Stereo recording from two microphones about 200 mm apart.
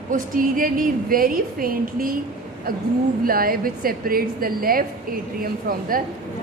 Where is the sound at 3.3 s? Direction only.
45° right (ahead or behind).